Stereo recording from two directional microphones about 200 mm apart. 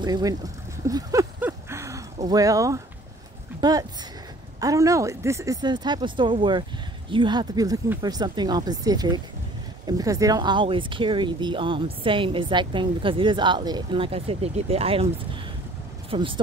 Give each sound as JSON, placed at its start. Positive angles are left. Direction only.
{"t": 0.0, "sound": "speech", "side_deg": -20}
{"t": 0.8, "sound": "a sound", "side_deg": -15}
{"t": 2.2, "sound": "speech", "side_deg": -15}
{"t": 16.1, "sound": "speech", "side_deg": -25}